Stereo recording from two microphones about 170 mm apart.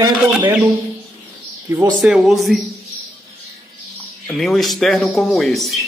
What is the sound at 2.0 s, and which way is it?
Speech, 5° right (ahead or behind).